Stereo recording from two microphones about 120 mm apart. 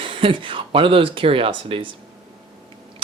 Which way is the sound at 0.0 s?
45° right (ahead or behind).